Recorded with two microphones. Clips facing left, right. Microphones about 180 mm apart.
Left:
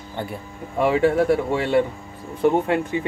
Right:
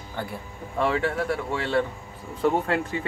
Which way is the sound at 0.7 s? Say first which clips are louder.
Left 7 dB; 15° left (ahead or behind).